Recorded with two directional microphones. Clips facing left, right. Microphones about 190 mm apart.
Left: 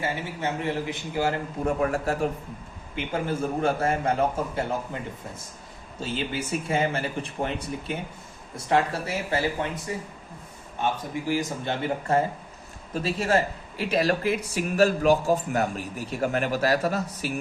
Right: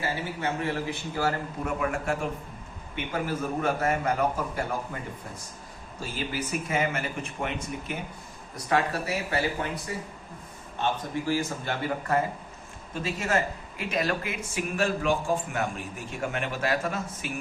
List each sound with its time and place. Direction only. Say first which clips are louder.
0.0 s a man's voice: left 1 dB; 20° left (ahead or behind)
1.6 s a man's voice: left 4 dB; 35° left (ahead or behind)
6.0 s a man's voice: left 3 dB; 25° left (ahead or behind)
10.8 s a man's voice: left 1 dB; 15° left (ahead or behind)
12.9 s speech: left 4 dB; 35° left (ahead or behind)